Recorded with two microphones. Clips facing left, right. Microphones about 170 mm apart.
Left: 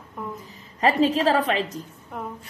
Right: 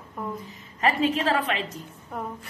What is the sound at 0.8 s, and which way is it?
A woman's voice, 35° left (ahead or behind).